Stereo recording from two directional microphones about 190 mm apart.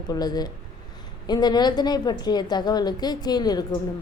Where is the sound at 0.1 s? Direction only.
20° left (ahead or behind).